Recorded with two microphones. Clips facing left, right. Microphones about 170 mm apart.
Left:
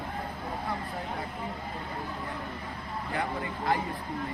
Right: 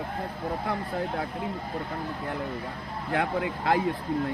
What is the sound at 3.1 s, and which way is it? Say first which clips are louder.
Speech: right 6 dB; 70° right (ahead or behind).